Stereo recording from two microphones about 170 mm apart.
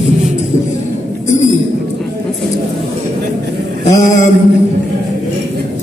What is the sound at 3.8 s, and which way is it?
Mantra, 45° left (ahead or behind).